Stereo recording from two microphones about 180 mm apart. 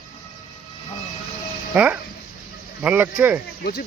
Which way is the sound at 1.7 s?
10° right (ahead or behind).